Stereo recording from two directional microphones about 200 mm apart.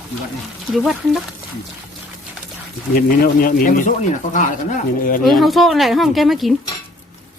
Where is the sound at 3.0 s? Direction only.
45° left (ahead or behind).